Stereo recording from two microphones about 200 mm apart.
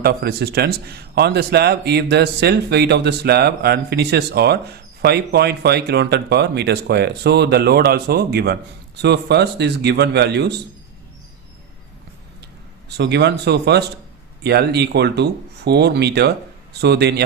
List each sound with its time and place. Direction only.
0.0 s a man's voice: 55° right (ahead or behind)
13.0 s a man's voice: 60° right (ahead or behind)